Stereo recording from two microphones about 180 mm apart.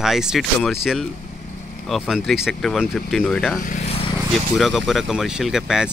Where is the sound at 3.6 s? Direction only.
45° left (ahead or behind).